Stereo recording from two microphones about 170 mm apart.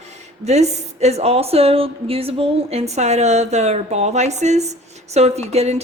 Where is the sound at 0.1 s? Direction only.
40° right (ahead or behind).